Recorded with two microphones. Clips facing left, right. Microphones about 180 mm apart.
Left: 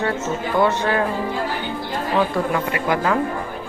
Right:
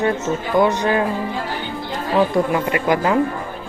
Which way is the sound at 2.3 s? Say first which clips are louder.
Right 3 dB; 15° right (ahead or behind).